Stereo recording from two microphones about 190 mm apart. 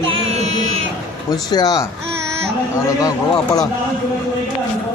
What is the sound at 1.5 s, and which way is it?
Speech, 20° left (ahead or behind).